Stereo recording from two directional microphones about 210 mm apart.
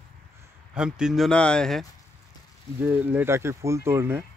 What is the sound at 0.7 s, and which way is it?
Speech, 5° right (ahead or behind).